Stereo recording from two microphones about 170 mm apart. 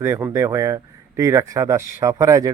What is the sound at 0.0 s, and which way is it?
Speech, 15° right (ahead or behind).